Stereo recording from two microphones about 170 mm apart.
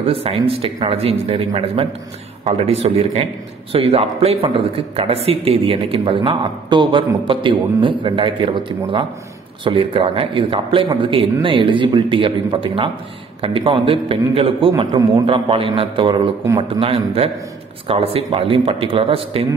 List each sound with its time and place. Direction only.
0.0 s speech: 35° right (ahead or behind)